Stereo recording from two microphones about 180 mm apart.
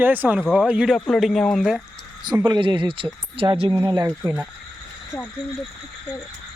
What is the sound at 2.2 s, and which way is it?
Speech, 25° right (ahead or behind).